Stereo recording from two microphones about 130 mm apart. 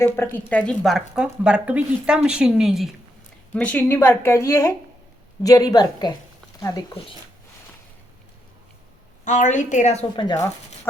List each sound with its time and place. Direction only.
0.0 s a woman's voice: 15° left (ahead or behind)
0.8 s speech: centre (ahead or behind)
3.5 s a woman's voice: 10° left (ahead or behind); by 6.8 s 25° left (ahead or behind)
9.2 s a woman's voice: 70° left (ahead or behind)
10.2 s speech: 30° left (ahead or behind)